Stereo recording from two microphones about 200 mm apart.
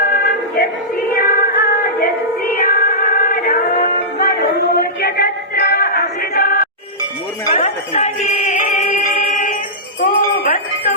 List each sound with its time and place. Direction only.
0.5 s a sound: 50° left (ahead or behind)
7.5 s music: 35° left (ahead or behind)
10.0 s jingle bell: 45° left (ahead or behind)